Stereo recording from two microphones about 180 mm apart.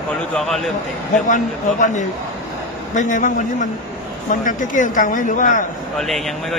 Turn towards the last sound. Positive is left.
turn(degrees=0)  # may be behind; listen again after turning